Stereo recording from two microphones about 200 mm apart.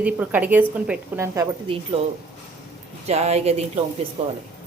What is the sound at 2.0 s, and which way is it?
A woman's voice, 30° right (ahead or behind).